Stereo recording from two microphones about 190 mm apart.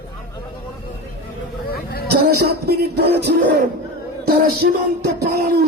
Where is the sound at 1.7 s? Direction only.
55° left (ahead or behind).